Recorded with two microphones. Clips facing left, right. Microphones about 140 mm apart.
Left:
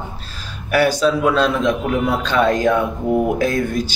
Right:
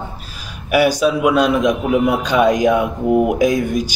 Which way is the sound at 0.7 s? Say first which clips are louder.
Right 1 dB; 15° right (ahead or behind).